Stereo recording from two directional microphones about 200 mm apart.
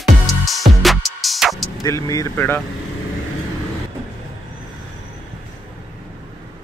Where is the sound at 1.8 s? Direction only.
15° left (ahead or behind).